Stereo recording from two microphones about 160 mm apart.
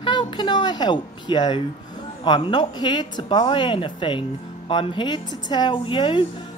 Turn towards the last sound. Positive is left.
turn(degrees=30)  # may be behind; listen again after turning